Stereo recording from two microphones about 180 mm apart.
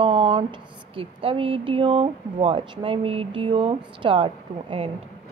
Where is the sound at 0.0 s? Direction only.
30° right (ahead or behind).